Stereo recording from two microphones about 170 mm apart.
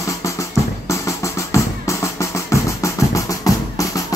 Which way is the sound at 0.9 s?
20° left (ahead or behind).